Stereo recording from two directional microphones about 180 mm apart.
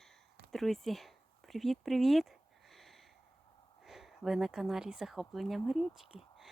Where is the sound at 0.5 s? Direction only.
Centre (ahead or behind).